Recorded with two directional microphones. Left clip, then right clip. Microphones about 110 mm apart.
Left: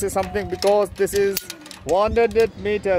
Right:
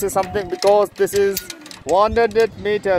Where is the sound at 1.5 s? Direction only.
55° left (ahead or behind).